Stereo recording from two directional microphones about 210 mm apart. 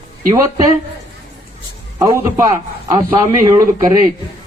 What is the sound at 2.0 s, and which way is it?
A man's voice, 15° right (ahead or behind).